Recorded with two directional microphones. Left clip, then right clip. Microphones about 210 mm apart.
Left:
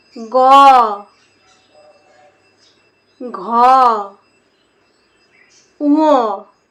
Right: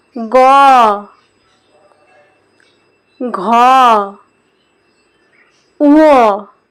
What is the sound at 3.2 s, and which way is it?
Speech, 45° right (ahead or behind).